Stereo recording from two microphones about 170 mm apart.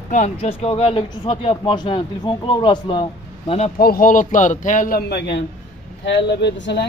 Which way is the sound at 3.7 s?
60° left (ahead or behind).